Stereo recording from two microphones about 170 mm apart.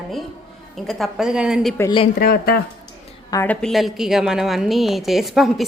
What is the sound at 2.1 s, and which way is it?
Speech, 65° left (ahead or behind).